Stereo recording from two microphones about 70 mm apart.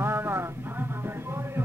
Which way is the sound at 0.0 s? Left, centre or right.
Right.